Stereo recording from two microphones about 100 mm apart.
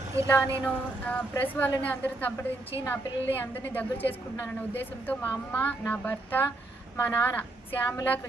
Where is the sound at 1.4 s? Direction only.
20° left (ahead or behind).